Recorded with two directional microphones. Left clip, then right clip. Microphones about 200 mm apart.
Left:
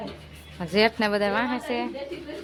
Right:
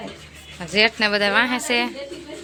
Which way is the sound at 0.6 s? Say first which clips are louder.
Right 4 dB; 20° left (ahead or behind).